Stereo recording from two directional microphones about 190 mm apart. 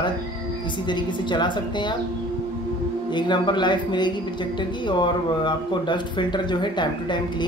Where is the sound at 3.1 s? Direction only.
25° left (ahead or behind).